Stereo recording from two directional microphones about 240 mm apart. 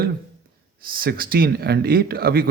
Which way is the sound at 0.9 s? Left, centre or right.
Right.